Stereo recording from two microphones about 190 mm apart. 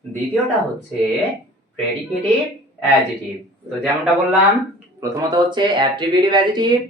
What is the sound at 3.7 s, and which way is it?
Speech, 5° right (ahead or behind).